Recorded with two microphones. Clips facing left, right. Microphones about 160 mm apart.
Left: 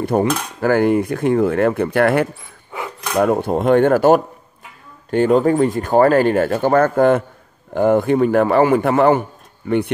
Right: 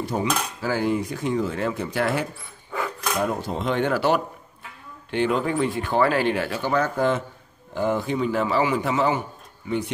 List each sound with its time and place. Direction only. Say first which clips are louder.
0.0 s cutlery: left 8 dB; 55° left (ahead or behind)
3.2 s speech: left 11 dB; 55° left (ahead or behind)
7.7 s cutlery: left 9 dB; 55° left (ahead or behind)